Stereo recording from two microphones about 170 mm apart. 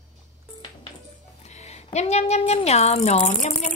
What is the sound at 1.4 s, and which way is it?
Speech, 40° left (ahead or behind).